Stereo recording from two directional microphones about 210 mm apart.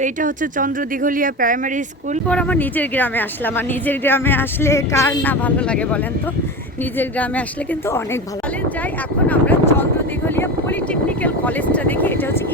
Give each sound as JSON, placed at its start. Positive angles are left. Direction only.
{"t": 0.0, "sound": "speech", "side_deg": -40}
{"t": 2.2, "sound": "speech", "side_deg": 5}
{"t": 7.0, "sound": "speech", "side_deg": 5}
{"t": 9.3, "sound": "speech", "side_deg": 10}